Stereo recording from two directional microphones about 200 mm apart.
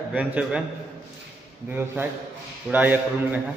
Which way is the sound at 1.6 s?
10° right (ahead or behind).